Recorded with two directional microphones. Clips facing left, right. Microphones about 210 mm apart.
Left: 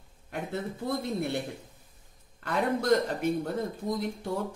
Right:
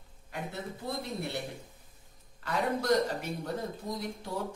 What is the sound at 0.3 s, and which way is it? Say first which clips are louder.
Speech: left 5 dB; 55° left (ahead or behind).